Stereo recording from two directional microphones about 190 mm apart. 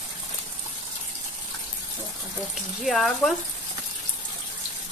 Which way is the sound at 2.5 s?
Centre (ahead or behind).